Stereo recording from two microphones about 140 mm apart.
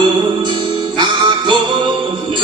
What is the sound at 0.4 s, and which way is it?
Music, 35° right (ahead or behind).